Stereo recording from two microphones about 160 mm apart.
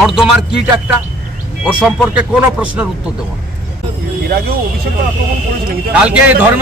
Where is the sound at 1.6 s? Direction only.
5° right (ahead or behind).